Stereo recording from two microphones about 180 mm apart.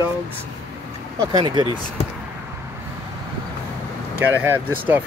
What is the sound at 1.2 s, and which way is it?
Speech, 20° right (ahead or behind).